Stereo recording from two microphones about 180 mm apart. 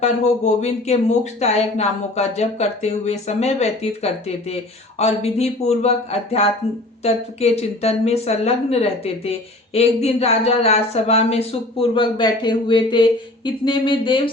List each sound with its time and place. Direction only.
0.0 s speech: 40° left (ahead or behind)